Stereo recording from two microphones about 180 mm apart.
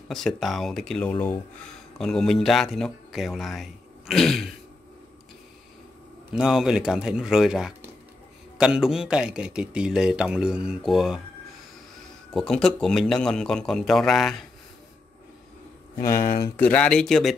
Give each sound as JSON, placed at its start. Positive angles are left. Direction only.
{"t": 0.1, "sound": "a man's voice", "side_deg": 0}
{"t": 6.3, "sound": "a man's voice", "side_deg": -5}
{"t": 12.4, "sound": "a man's voice", "side_deg": 5}
{"t": 16.3, "sound": "speech", "side_deg": 20}
{"t": 16.6, "sound": "a man's voice", "side_deg": 5}